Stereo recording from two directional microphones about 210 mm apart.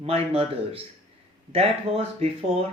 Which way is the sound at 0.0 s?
30° right (ahead or behind).